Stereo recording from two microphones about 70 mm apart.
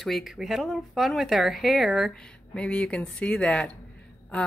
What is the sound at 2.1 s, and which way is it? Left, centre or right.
A woman's voice, centre.